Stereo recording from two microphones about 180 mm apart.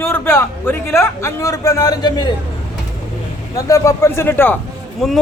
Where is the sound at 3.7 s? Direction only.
20° left (ahead or behind).